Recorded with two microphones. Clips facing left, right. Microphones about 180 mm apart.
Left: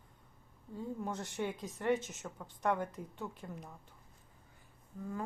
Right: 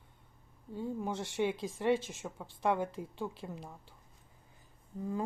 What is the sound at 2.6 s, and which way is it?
Speech, 25° right (ahead or behind).